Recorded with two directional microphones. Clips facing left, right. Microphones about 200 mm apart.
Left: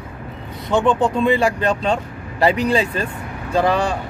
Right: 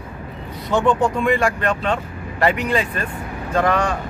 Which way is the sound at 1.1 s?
30° left (ahead or behind).